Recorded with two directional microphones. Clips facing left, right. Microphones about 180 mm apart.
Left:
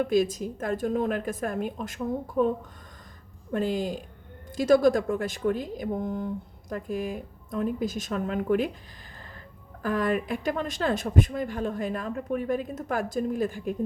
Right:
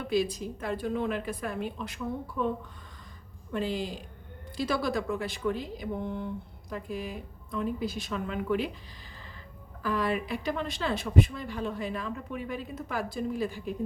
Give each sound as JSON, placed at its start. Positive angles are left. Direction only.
{"t": 0.0, "sound": "speech", "side_deg": 45}
{"t": 9.8, "sound": "speech", "side_deg": 50}